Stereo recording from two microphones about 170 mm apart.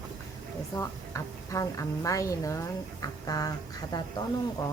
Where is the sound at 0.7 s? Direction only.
20° left (ahead or behind).